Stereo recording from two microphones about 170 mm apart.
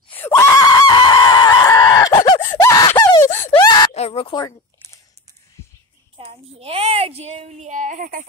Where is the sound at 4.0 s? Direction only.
35° left (ahead or behind).